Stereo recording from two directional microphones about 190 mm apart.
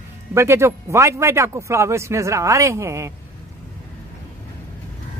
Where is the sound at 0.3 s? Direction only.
15° right (ahead or behind).